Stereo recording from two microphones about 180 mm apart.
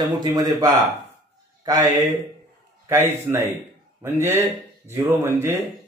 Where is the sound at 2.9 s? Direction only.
15° right (ahead or behind).